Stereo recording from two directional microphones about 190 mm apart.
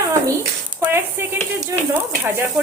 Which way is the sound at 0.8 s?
10° right (ahead or behind).